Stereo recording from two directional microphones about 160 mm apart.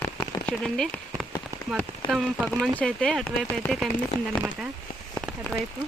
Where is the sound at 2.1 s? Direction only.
5° right (ahead or behind).